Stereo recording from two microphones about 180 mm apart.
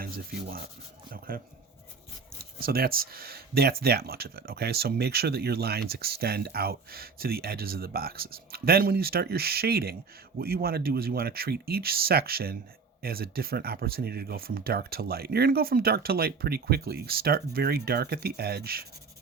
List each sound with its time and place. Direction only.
0.0 s rub: 55° right (ahead or behind)
1.3 s speech: 55° right (ahead or behind)